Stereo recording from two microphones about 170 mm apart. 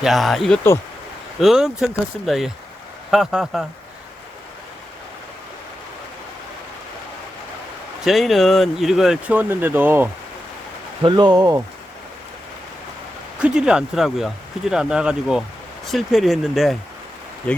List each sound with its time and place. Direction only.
0.0 s speech: centre (ahead or behind)
8.0 s speech: centre (ahead or behind)
11.0 s speech: 25° right (ahead or behind)
13.4 s speech: 5° right (ahead or behind)